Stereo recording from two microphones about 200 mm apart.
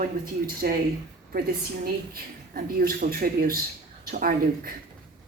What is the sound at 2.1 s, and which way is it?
Speech, 50° right (ahead or behind).